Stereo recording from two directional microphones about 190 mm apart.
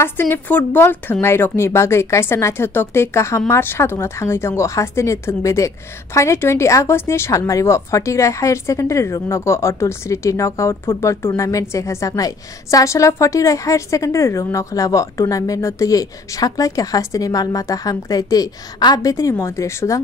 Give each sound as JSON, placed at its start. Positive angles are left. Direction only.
{"t": 0.0, "sound": "a woman's voice", "side_deg": 10}